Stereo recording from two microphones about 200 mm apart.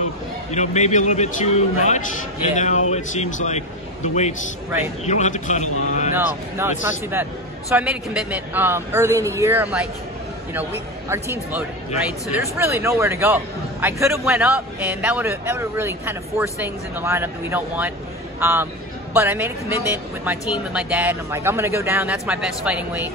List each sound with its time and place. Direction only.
0.5 s a man's voice: 35° left (ahead or behind)
6.1 s a man's voice: 10° right (ahead or behind)
12.3 s speech: 10° right (ahead or behind)